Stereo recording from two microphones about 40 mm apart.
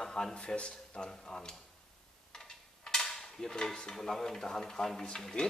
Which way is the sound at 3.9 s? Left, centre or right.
Centre.